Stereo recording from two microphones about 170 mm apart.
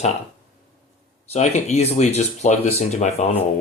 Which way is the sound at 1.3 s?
40° left (ahead or behind).